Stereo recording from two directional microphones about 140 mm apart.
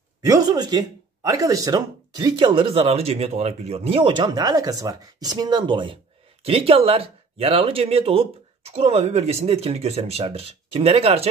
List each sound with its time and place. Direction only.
0.2 s speech: 25° right (ahead or behind); by 11.2 s 45° right (ahead or behind)